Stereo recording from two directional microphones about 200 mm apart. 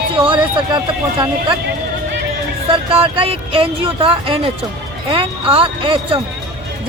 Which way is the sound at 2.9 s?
30° right (ahead or behind).